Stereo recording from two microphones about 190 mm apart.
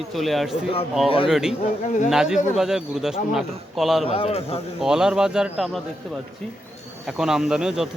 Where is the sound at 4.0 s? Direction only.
30° left (ahead or behind).